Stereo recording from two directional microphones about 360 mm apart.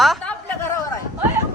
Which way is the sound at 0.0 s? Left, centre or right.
Centre.